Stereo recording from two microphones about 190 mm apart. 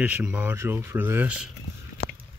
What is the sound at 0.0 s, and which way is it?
Speech, 5° right (ahead or behind).